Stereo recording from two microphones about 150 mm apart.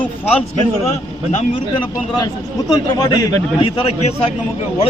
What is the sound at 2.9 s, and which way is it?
Speech, 25° left (ahead or behind).